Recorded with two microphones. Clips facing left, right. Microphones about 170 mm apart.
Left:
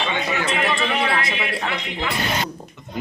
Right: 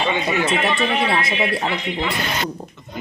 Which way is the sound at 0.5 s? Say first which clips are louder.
Right 2 dB; centre (ahead or behind).